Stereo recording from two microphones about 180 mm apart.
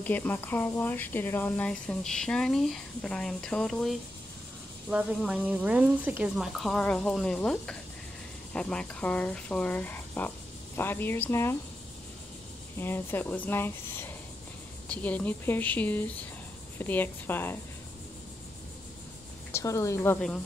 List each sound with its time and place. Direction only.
0.0 s speech: 10° left (ahead or behind)
12.7 s speech: 10° left (ahead or behind)
19.5 s speech: 15° left (ahead or behind)